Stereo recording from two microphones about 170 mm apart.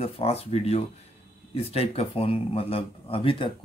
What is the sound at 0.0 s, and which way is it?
Speech, 35° left (ahead or behind).